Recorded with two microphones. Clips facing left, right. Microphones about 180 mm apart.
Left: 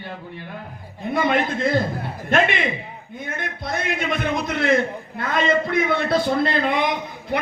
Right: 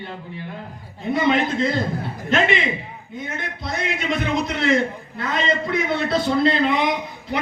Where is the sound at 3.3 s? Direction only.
50° left (ahead or behind).